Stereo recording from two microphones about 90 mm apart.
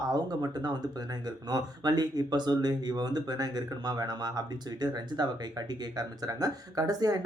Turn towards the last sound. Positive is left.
turn(degrees=-45)  # may be behind; listen again after turning